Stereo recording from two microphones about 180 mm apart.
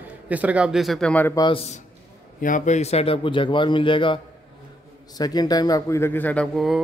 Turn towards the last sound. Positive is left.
turn(degrees=0)  # may be behind; listen again after turning